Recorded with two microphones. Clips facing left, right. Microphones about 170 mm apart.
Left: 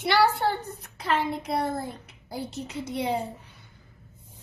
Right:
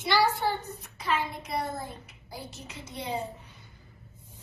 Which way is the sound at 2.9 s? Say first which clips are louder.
Left 6 dB; 70° left (ahead or behind).